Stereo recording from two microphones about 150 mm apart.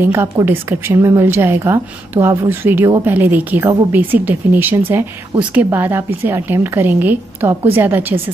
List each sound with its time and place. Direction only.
0.0 s a woman's voice: 15° right (ahead or behind)